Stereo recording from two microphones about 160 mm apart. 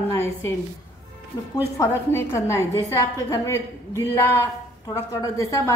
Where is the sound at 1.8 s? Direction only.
20° left (ahead or behind).